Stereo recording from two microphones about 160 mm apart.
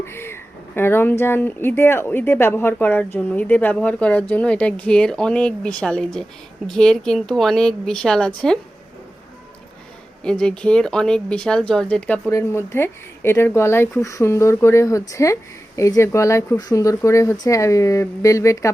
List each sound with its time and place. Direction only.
0.0 s speech: 15° left (ahead or behind)
10.2 s speech: 5° left (ahead or behind)